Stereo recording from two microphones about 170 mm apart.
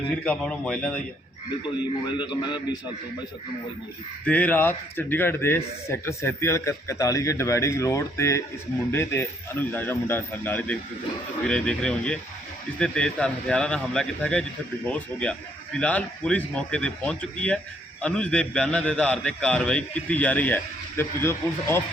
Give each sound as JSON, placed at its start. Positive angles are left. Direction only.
{"t": 0.3, "sound": "speech", "side_deg": 5}
{"t": 2.0, "sound": "a man's voice", "side_deg": 25}
{"t": 4.3, "sound": "a man's voice", "side_deg": 10}